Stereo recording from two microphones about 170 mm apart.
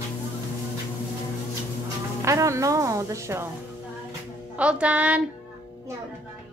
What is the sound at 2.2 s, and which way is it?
A woman's voice, 15° right (ahead or behind).